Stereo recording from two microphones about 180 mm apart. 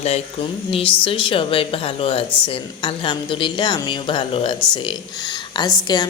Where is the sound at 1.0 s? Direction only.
30° left (ahead or behind).